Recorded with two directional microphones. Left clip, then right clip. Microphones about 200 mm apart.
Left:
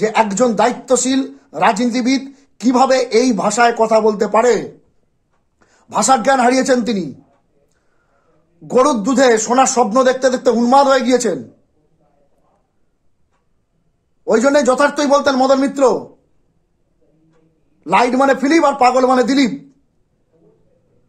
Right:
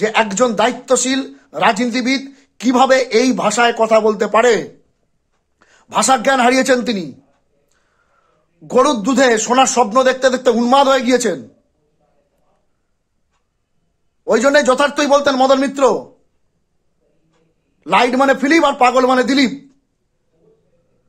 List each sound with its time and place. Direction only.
0.0 s speech: 5° right (ahead or behind)
5.6 s a sound: 5° right (ahead or behind)
6.4 s speech: 10° right (ahead or behind)
8.8 s speech: 5° right (ahead or behind)
11.0 s speech: 25° right (ahead or behind)
14.2 s speech: 5° right (ahead or behind)
14.7 s speech: 25° right (ahead or behind)
15.3 s speech: 5° right (ahead or behind)
17.7 s speech: 5° right (ahead or behind)